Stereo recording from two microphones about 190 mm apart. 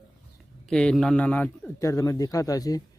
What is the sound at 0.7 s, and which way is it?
A man's voice, 5° left (ahead or behind).